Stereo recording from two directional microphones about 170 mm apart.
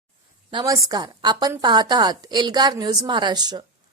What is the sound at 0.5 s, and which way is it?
Speech, 20° right (ahead or behind).